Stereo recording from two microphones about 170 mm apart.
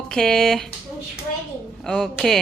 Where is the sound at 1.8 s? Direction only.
5° left (ahead or behind).